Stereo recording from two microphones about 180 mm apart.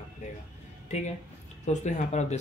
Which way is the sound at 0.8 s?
40° left (ahead or behind).